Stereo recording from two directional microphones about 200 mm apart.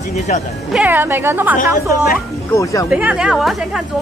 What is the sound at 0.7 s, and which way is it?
Speech, 10° right (ahead or behind).